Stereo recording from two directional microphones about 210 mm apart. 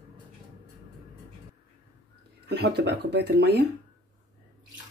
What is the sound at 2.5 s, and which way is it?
Speech, 50° right (ahead or behind).